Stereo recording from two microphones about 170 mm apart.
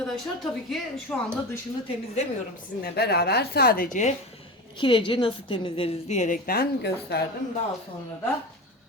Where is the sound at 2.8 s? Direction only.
70° left (ahead or behind); by 4.1 s 55° left (ahead or behind).